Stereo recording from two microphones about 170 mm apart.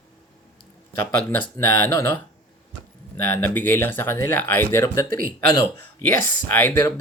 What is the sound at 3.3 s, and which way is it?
Speech, 10° left (ahead or behind).